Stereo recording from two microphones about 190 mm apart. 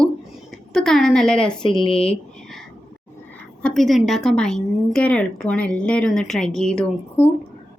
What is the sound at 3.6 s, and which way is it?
A woman's voice, centre (ahead or behind).